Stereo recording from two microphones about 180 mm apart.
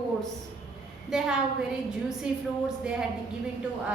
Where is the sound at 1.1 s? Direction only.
5° right (ahead or behind).